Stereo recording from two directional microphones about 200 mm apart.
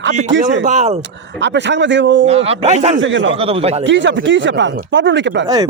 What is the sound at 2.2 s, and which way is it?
Speech, 30° right (ahead or behind).